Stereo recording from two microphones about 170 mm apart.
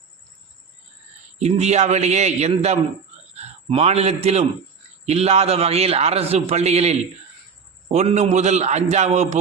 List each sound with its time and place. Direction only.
1.4 s a man's voice: 40° right (ahead or behind)